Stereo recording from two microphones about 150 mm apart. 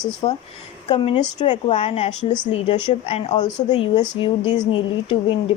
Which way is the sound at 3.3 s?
25° left (ahead or behind).